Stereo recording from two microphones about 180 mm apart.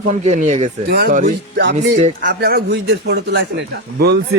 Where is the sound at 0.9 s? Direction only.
60° right (ahead or behind).